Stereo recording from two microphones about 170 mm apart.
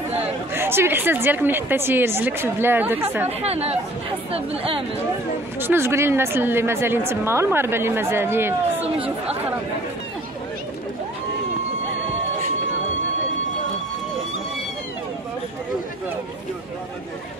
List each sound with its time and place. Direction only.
0.6 s a woman's voice: 15° right (ahead or behind)
3.3 s speech: 35° right (ahead or behind)
5.6 s a woman's voice: 15° right (ahead or behind)
8.8 s speech: 35° right (ahead or behind)